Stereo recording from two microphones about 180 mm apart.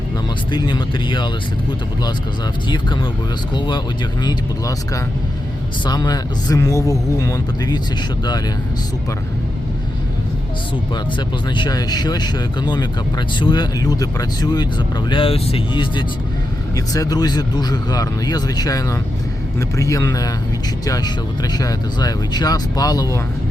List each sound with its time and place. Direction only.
0.5 s speech: 25° left (ahead or behind)
2.6 s speech: 25° left (ahead or behind)
4.2 s speech: 20° left (ahead or behind)
10.9 s speech: 25° left (ahead or behind)